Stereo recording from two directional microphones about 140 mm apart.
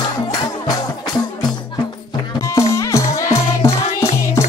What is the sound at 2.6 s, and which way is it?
Music, 20° left (ahead or behind).